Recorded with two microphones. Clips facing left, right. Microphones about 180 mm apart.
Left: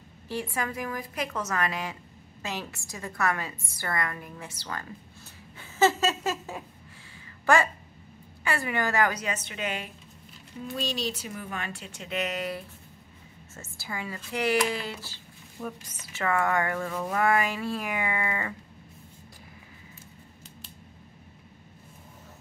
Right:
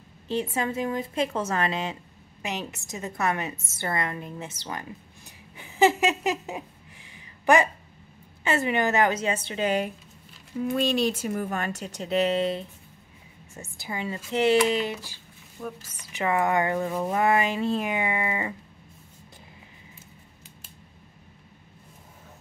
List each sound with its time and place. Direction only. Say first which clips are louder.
0.3 s speech: right 5 dB; 20° right (ahead or behind)
10.7 s speech: right 7 dB; 55° right (ahead or behind); by 15.1 s 20° right (ahead or behind)
15.6 s speech: right 1 dB; 5° left (ahead or behind)
16.0 s speech: right 2 dB; 15° right (ahead or behind)